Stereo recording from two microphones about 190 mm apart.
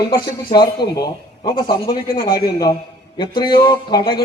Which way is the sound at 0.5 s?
25° left (ahead or behind).